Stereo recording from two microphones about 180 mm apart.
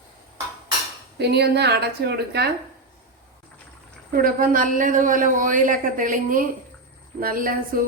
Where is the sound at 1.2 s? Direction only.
70° right (ahead or behind).